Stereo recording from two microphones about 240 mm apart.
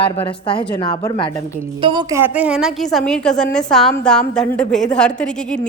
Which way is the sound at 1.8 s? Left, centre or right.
Centre.